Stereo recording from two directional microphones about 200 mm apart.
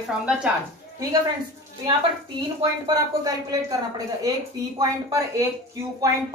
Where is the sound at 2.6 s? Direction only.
20° right (ahead or behind).